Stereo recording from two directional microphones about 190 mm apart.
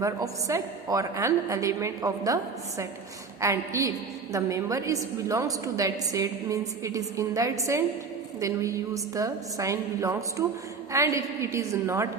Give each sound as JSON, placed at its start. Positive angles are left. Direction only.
{"t": 0.0, "sound": "a woman's voice", "side_deg": -15}